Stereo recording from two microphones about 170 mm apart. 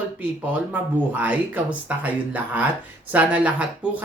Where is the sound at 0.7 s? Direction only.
10° right (ahead or behind).